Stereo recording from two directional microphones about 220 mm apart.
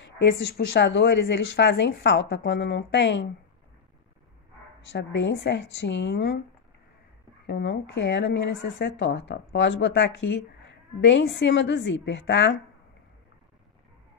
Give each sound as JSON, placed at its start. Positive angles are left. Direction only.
{"t": 0.0, "sound": "speech", "side_deg": 55}
{"t": 4.9, "sound": "speech", "side_deg": 55}
{"t": 7.4, "sound": "a woman's voice", "side_deg": 50}